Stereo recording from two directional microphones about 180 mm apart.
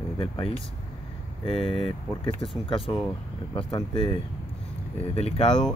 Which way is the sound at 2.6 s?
30° left (ahead or behind).